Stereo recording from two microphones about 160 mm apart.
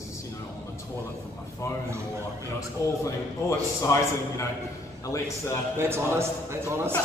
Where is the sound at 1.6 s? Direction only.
20° left (ahead or behind).